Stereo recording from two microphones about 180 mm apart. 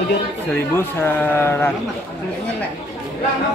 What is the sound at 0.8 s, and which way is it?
Speech, 10° left (ahead or behind).